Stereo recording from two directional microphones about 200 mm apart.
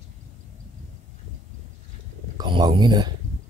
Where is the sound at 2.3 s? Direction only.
20° right (ahead or behind).